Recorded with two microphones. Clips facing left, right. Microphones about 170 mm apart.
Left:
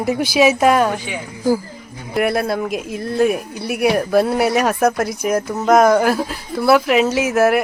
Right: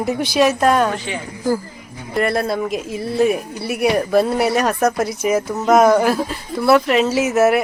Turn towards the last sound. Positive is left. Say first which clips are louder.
# even
turn(degrees=0)  # may be behind; listen again after turning